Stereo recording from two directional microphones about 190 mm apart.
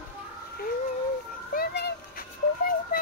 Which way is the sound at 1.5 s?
55° left (ahead or behind).